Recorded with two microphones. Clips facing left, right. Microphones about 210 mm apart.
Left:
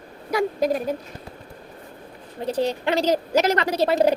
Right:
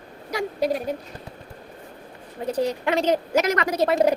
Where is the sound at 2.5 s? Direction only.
30° left (ahead or behind).